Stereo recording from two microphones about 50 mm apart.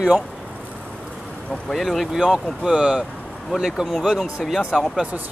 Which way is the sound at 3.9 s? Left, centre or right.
Centre.